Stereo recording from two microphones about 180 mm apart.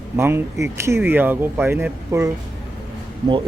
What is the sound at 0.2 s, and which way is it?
Speech, 15° right (ahead or behind).